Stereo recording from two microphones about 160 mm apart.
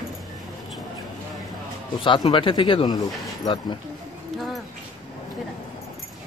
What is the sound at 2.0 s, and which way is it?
A man's voice, 30° left (ahead or behind).